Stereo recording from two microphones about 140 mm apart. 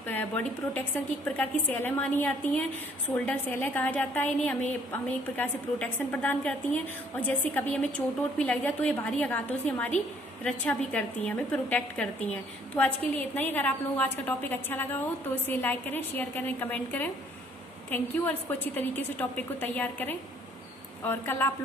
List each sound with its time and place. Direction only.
0.0 s a woman's voice: 15° left (ahead or behind)